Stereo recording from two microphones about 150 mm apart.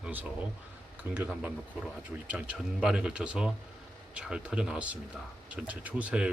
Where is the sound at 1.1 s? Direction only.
10° right (ahead or behind).